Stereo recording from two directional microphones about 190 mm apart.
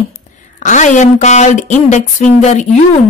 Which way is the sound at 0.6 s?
40° left (ahead or behind).